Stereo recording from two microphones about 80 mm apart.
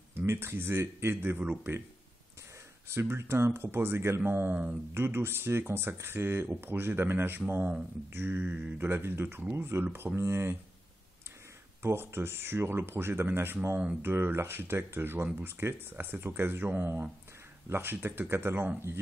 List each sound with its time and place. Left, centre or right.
0.1 s speech: right
2.9 s speech: right
11.8 s speech: right